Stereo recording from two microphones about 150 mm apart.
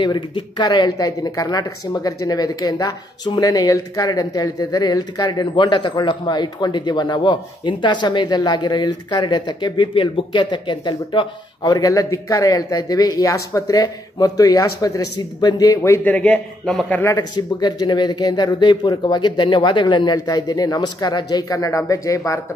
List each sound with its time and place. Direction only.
0.0 s speech: 30° left (ahead or behind); by 17.0 s 5° left (ahead or behind)
17.0 s speech: 25° left (ahead or behind)